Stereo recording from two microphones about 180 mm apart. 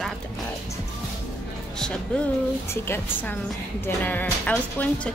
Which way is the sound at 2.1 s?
5° left (ahead or behind).